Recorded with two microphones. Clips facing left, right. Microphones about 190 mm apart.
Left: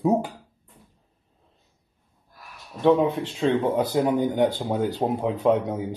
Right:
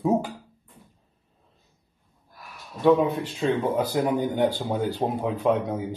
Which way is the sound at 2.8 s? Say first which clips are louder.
Even; 25° left (ahead or behind).